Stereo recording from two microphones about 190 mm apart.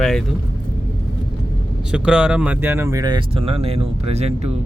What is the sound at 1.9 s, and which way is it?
Speech, 5° right (ahead or behind).